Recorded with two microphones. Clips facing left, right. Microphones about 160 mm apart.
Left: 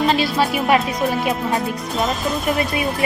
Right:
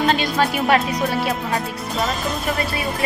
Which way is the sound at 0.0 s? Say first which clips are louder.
Left 1 dB; centre (ahead or behind).